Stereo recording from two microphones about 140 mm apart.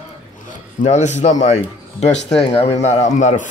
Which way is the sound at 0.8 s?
55° left (ahead or behind).